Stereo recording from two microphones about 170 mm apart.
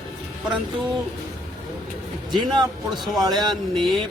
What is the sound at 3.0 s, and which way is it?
Speech, centre (ahead or behind).